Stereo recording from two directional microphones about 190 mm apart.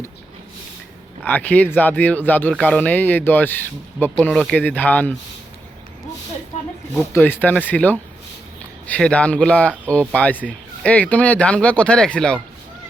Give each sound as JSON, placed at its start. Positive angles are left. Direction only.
{"t": 1.2, "sound": "speech", "side_deg": 10}
{"t": 6.9, "sound": "speech", "side_deg": 15}